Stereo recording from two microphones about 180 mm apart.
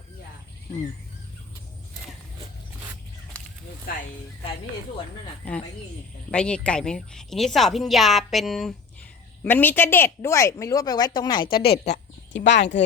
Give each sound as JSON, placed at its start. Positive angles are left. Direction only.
{"t": 5.4, "sound": "a woman's voice", "side_deg": 10}
{"t": 9.4, "sound": "a woman's voice", "side_deg": 10}
{"t": 11.4, "sound": "a woman's voice", "side_deg": 60}
{"t": 12.5, "sound": "speech", "side_deg": 75}